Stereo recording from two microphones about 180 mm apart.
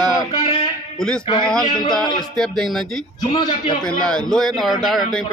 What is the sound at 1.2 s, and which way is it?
Music, 25° left (ahead or behind).